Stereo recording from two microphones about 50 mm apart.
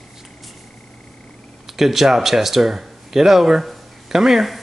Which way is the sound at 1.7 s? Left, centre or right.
Centre.